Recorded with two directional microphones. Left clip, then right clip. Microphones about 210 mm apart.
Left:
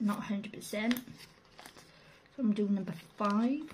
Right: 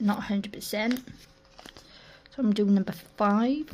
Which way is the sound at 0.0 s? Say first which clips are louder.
Right 7 dB; 55° right (ahead or behind).